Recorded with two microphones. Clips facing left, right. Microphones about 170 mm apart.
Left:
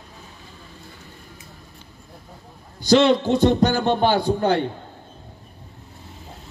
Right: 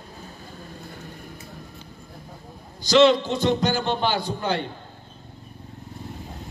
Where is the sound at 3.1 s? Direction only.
60° left (ahead or behind).